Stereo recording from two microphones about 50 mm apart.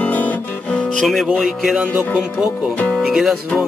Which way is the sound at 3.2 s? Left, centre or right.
Centre.